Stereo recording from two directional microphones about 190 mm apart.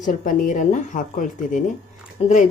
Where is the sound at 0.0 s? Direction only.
45° left (ahead or behind).